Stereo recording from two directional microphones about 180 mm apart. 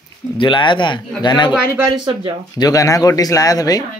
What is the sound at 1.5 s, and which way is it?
Speech, 10° right (ahead or behind).